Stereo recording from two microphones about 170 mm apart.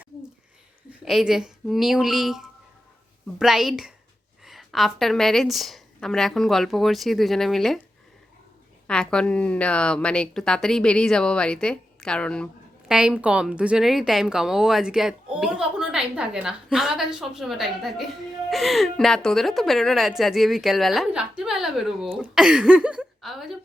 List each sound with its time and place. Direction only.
1.0 s a woman's voice: centre (ahead or behind)
8.9 s a woman's voice: 5° left (ahead or behind)
12.9 s a woman's voice: 5° right (ahead or behind)